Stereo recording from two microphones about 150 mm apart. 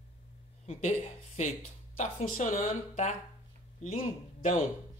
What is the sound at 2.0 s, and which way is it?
A man's voice, 60° left (ahead or behind).